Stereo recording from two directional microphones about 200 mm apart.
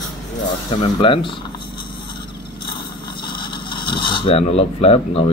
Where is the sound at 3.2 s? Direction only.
25° left (ahead or behind).